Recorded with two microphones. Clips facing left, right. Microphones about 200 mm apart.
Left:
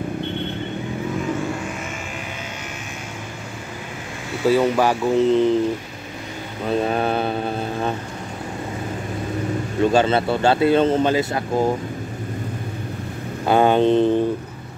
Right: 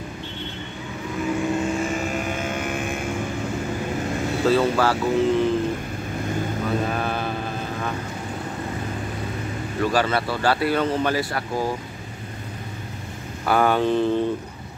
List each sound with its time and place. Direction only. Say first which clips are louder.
4.5 s speech: left 3 dB; 15° left (ahead or behind)
6.9 s mantra: left 5 dB; 30° left (ahead or behind)
9.8 s speech: left 5 dB; 25° left (ahead or behind)
13.5 s speech: left 4 dB; 20° left (ahead or behind)